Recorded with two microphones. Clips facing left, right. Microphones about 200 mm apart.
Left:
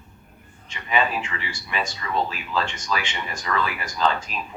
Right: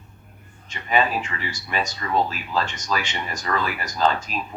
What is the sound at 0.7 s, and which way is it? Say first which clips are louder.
Speech: right 2 dB; 40° right (ahead or behind).